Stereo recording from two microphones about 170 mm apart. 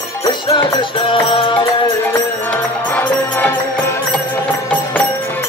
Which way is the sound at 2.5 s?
10° left (ahead or behind).